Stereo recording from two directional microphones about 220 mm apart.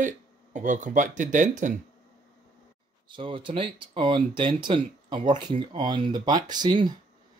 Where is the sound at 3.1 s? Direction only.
20° right (ahead or behind).